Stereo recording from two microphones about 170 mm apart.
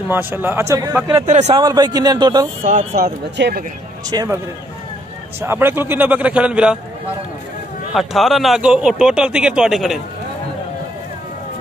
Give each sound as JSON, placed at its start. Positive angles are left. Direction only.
{"t": 0.1, "sound": "a man's voice", "side_deg": -10}
{"t": 1.2, "sound": "a man's voice", "side_deg": -40}
{"t": 1.6, "sound": "speech", "side_deg": -25}
{"t": 3.0, "sound": "speech", "side_deg": -70}
{"t": 4.1, "sound": "speech", "side_deg": -20}
{"t": 5.4, "sound": "a man's voice", "side_deg": -15}
{"t": 7.9, "sound": "speech", "side_deg": 0}